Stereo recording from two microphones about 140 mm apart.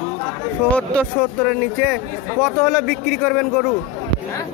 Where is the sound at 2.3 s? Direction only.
15° left (ahead or behind).